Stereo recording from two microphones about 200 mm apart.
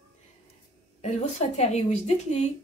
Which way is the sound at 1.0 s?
35° left (ahead or behind).